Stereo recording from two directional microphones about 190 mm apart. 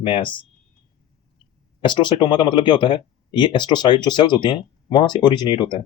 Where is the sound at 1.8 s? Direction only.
25° left (ahead or behind).